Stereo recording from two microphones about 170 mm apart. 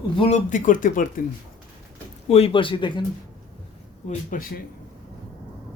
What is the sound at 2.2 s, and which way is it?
Speech, 35° left (ahead or behind).